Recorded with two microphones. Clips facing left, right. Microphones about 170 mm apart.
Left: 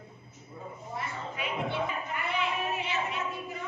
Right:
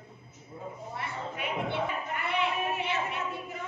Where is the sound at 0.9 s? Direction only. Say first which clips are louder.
Left 1 dB; 60° right (ahead or behind).